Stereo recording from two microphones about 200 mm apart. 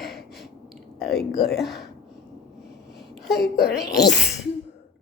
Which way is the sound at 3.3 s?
55° left (ahead or behind).